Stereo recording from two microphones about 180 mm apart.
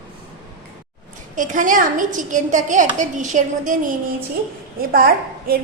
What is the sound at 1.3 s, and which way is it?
A woman's voice, 45° right (ahead or behind).